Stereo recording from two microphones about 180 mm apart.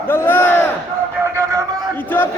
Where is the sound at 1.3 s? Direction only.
15° right (ahead or behind).